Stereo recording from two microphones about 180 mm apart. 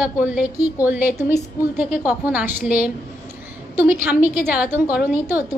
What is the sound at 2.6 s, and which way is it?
Speech, 55° left (ahead or behind).